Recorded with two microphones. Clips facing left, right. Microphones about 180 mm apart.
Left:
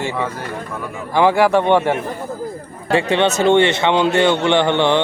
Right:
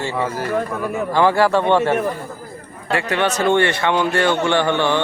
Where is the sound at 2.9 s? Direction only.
25° left (ahead or behind).